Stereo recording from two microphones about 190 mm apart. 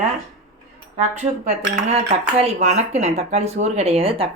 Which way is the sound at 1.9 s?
35° right (ahead or behind).